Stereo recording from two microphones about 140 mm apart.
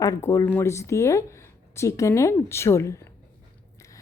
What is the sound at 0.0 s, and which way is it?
Speech, 25° left (ahead or behind).